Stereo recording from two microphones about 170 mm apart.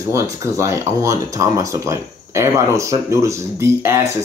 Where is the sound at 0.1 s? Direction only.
15° right (ahead or behind).